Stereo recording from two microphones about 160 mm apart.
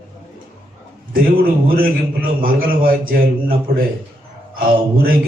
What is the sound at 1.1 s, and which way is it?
A man's voice, 65° right (ahead or behind).